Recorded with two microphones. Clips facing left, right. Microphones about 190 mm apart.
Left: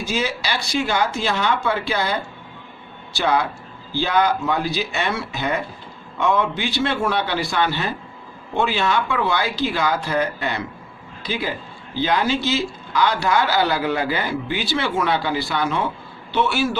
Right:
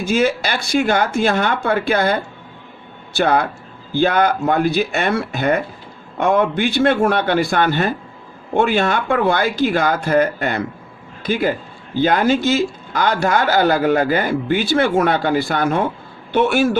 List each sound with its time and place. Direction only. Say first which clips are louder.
0.0 s a man's voice: right 7 dB; 50° right (ahead or behind)